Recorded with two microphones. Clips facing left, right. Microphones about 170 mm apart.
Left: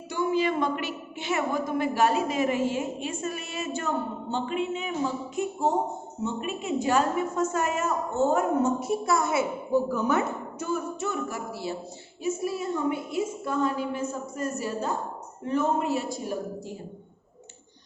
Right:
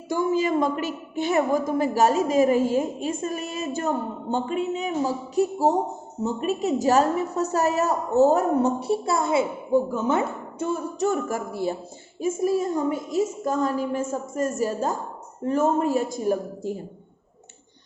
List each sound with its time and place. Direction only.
0.1 s a woman's voice: 45° right (ahead or behind); by 10.8 s 25° right (ahead or behind)
11.0 s a woman's voice: 45° right (ahead or behind)